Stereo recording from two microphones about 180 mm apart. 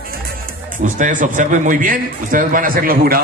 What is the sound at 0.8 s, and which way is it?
A man's voice, 45° right (ahead or behind).